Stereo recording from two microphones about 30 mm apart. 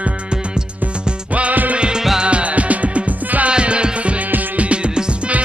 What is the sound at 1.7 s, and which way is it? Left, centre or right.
Music, right.